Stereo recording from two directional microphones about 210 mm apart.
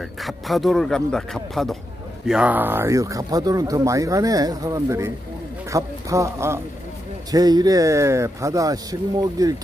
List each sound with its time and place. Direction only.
0.2 s a man's voice: centre (ahead or behind); by 9.6 s 15° right (ahead or behind)